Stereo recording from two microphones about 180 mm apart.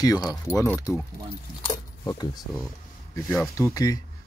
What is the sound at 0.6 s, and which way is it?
Speech, 15° left (ahead or behind).